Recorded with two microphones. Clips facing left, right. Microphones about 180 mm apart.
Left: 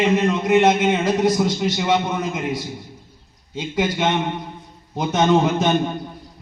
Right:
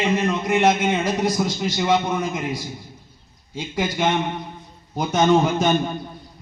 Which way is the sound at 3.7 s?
Centre (ahead or behind).